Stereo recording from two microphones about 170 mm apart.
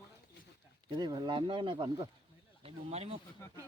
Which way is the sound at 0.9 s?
25° right (ahead or behind).